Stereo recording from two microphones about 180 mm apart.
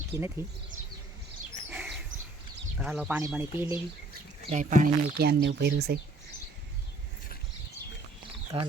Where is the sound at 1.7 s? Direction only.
5° right (ahead or behind).